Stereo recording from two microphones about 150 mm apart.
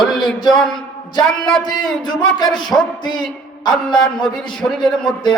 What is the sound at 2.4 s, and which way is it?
Speech, 5° left (ahead or behind).